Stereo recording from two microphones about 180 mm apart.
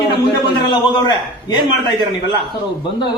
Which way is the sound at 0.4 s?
25° left (ahead or behind).